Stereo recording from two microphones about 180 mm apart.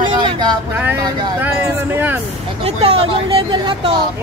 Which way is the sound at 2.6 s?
35° right (ahead or behind).